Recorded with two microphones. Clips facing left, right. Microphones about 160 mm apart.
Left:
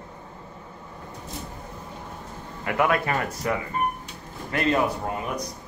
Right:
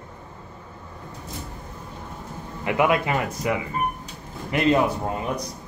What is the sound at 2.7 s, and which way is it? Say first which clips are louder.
A man's voice: right 2 dB; 20° right (ahead or behind).